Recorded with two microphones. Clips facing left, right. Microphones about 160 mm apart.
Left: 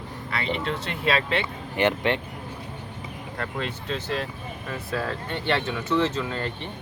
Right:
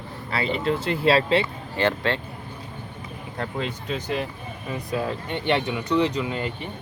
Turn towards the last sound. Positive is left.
turn(degrees=-15)  # may be behind; listen again after turning